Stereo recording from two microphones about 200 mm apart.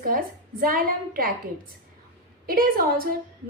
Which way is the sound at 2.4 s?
45° right (ahead or behind).